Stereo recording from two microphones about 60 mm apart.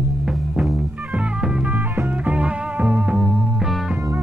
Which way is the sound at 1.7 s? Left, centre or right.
Right.